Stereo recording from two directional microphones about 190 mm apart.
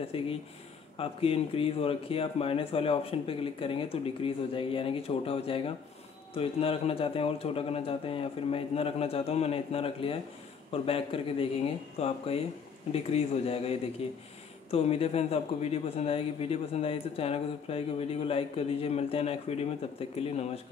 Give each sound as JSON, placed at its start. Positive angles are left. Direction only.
{"t": 0.1, "sound": "a man's voice", "side_deg": 30}